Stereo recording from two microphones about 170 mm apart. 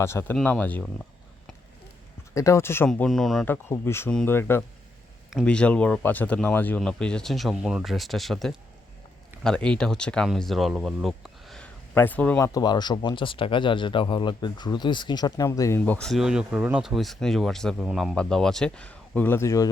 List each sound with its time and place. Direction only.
0.0 s speech: 15° left (ahead or behind)
2.3 s speech: 15° left (ahead or behind); by 3.4 s centre (ahead or behind)
3.4 s speech: 15° left (ahead or behind)
12.5 s speech: 25° left (ahead or behind)
15.8 s speech: 5° left (ahead or behind)